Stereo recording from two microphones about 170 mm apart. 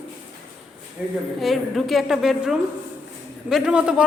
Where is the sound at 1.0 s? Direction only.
5° right (ahead or behind).